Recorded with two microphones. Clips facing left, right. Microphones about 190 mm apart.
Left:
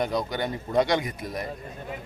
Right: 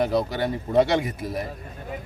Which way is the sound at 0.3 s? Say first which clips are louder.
Right 3 dB; 5° right (ahead or behind).